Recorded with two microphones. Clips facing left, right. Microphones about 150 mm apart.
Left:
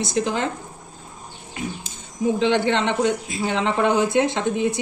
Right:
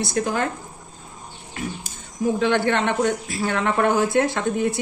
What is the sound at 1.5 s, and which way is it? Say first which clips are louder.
A woman's voice: even; 20° left (ahead or behind).